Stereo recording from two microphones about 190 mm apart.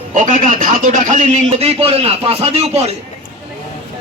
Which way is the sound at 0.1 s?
40° right (ahead or behind).